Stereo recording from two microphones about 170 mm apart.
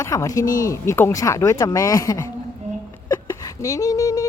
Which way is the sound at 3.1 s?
20° left (ahead or behind).